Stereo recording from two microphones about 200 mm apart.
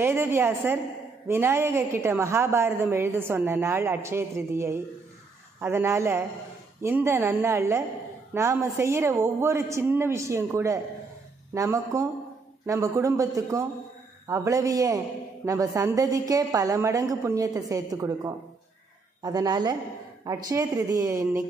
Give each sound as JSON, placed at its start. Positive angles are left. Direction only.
{"t": 0.0, "sound": "a woman's voice", "side_deg": -10}